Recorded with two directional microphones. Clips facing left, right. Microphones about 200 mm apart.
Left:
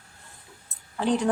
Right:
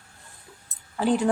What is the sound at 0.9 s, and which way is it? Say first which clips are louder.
Speech: right 2 dB; 5° right (ahead or behind).